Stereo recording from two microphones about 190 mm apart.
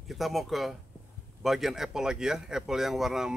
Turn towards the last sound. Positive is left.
turn(degrees=0)  # may be behind; listen again after turning